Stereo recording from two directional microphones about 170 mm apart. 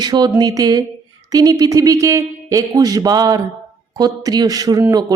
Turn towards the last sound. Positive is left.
turn(degrees=-20)  # may be behind; listen again after turning